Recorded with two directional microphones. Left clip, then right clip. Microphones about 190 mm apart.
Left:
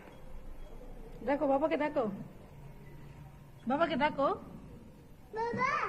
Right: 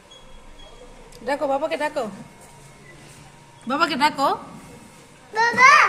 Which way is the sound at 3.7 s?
5° right (ahead or behind).